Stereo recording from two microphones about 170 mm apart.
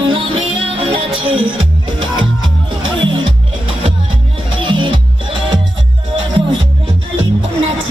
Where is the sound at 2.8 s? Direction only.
30° right (ahead or behind).